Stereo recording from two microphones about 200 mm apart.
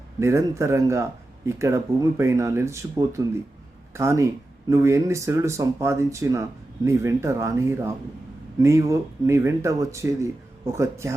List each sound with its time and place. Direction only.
0.2 s speech: 15° right (ahead or behind)